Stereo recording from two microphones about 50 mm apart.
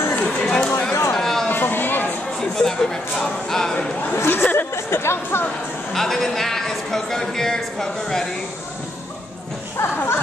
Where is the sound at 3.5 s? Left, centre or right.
Centre.